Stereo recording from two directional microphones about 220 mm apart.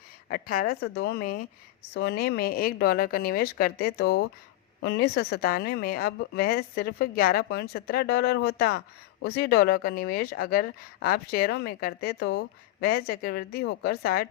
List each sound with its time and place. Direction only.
0.3 s speech: 40° left (ahead or behind)